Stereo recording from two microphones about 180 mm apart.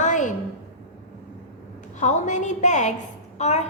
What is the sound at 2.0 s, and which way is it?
A woman's voice, 40° left (ahead or behind).